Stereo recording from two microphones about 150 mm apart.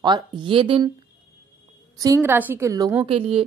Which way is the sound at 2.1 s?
10° right (ahead or behind).